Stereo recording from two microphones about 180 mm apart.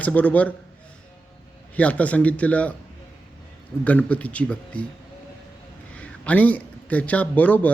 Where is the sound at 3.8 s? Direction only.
10° left (ahead or behind).